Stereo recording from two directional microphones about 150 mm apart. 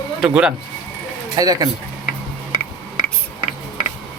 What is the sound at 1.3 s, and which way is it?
Speech, 25° right (ahead or behind).